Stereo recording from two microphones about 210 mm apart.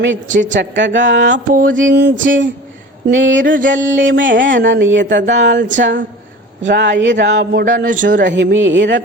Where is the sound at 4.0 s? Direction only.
60° right (ahead or behind).